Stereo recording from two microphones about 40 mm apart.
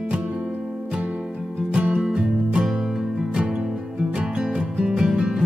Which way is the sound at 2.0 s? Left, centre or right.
Right.